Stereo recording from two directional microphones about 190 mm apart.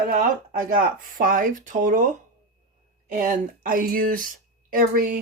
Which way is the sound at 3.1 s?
45° right (ahead or behind).